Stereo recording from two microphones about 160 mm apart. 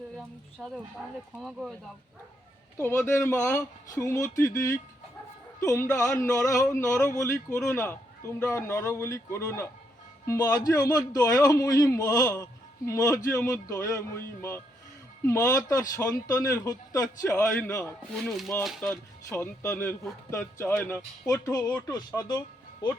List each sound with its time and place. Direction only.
0.6 s speech: centre (ahead or behind)
2.8 s a man's voice: 15° left (ahead or behind)
18.2 s speech: centre (ahead or behind); by 23.0 s 25° left (ahead or behind)